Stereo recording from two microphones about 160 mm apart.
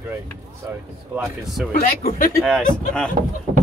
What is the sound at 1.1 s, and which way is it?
Speech, centre (ahead or behind).